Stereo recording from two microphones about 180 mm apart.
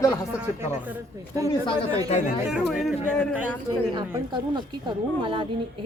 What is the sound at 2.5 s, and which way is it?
Speech, centre (ahead or behind).